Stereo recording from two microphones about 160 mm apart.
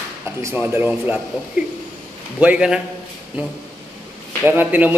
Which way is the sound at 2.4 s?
5° right (ahead or behind).